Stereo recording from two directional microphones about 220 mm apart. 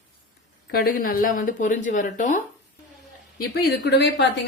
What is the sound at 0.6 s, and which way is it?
A woman's voice, 45° left (ahead or behind).